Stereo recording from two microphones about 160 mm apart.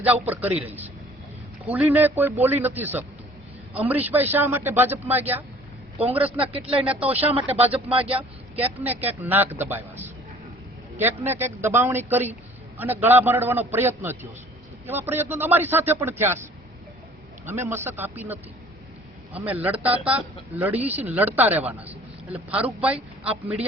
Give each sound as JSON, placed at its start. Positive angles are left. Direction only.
{"t": 0.0, "sound": "a man's voice", "side_deg": -10}
{"t": 6.0, "sound": "speech", "side_deg": -40}
{"t": 6.8, "sound": "a man's voice", "side_deg": -10}
{"t": 7.2, "sound": "speech", "side_deg": -40}
{"t": 8.0, "sound": "a man's voice", "side_deg": -10}
{"t": 17.4, "sound": "a man's voice", "side_deg": -15}
{"t": 23.0, "sound": "speech", "side_deg": -40}